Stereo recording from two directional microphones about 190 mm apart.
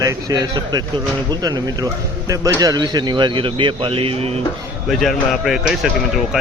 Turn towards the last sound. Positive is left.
turn(degrees=0)  # may be behind; listen again after turning